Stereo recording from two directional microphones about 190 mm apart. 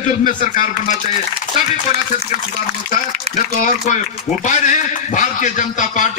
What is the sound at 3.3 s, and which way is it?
A man's voice, 40° left (ahead or behind).